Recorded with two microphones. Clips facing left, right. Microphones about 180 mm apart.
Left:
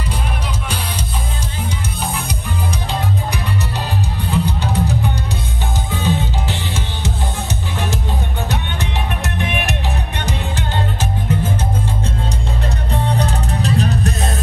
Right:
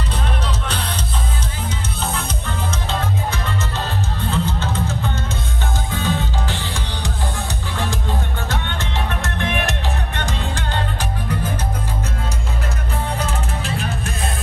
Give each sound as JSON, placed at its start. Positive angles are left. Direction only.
{"t": 2.0, "sound": "music", "side_deg": 10}
{"t": 12.9, "sound": "music", "side_deg": 35}